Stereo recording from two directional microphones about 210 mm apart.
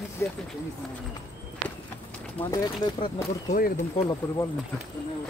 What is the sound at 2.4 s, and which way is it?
Speech, 20° left (ahead or behind).